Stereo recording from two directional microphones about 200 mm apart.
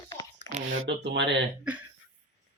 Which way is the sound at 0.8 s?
65° right (ahead or behind).